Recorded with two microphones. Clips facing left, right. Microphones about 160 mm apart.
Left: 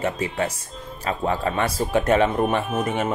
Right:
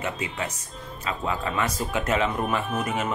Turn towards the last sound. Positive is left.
turn(degrees=35)  # may be behind; listen again after turning